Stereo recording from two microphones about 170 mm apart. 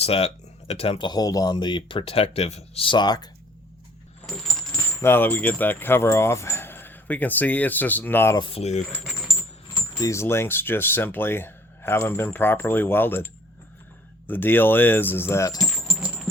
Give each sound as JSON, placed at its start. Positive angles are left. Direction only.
{"t": 0.0, "sound": "speech", "side_deg": 35}
{"t": 4.9, "sound": "speech", "side_deg": 15}
{"t": 8.4, "sound": "speech", "side_deg": 35}
{"t": 9.7, "sound": "speech", "side_deg": 25}
{"t": 14.3, "sound": "speech", "side_deg": 10}
{"t": 15.7, "sound": "a sound", "side_deg": -5}